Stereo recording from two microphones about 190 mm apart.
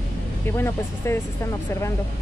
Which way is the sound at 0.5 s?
15° left (ahead or behind).